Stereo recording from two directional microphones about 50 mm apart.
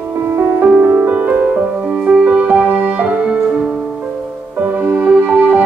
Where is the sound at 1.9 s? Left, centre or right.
Right.